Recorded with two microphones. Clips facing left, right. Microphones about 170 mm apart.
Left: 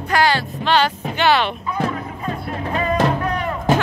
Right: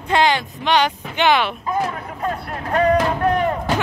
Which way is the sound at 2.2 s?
55° right (ahead or behind).